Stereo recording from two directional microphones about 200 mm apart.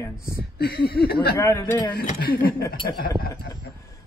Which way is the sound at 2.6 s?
20° left (ahead or behind).